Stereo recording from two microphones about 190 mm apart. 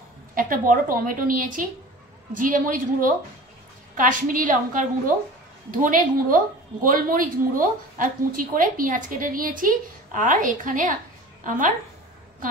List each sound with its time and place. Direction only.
0.3 s a woman's voice: 45° right (ahead or behind)